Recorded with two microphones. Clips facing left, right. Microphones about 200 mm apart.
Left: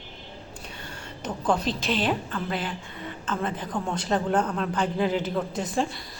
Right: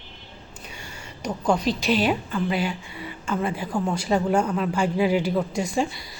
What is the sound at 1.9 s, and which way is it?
A woman's voice, 5° right (ahead or behind).